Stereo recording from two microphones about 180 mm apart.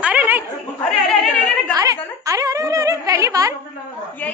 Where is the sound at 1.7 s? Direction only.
20° right (ahead or behind).